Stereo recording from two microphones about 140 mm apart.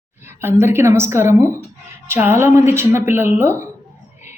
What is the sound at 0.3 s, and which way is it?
Speech, 15° right (ahead or behind).